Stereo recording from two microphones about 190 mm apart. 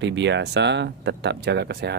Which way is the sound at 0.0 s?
65° right (ahead or behind).